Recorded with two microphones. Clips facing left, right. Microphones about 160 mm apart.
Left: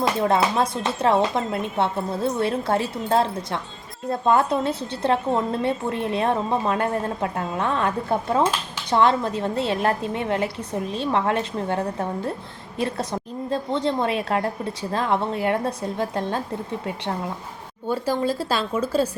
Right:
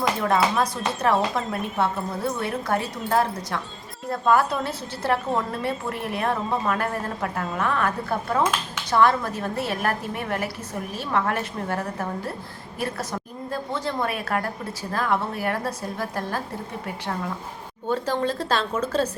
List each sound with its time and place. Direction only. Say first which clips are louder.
0.0 s a woman's voice: left 2 dB; 25° left (ahead or behind)
13.5 s a woman's voice: left 5 dB; 25° left (ahead or behind)
17.8 s speech: left 1 dB; 10° left (ahead or behind)